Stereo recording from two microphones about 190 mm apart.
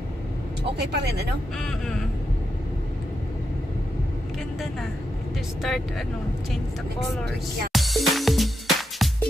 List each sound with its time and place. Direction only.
0.7 s speech: 60° right (ahead or behind)
1.6 s speech: centre (ahead or behind)
5.6 s speech: centre (ahead or behind)
7.7 s music: centre (ahead or behind)